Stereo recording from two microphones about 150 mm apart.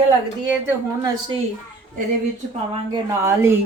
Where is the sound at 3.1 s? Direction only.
15° right (ahead or behind).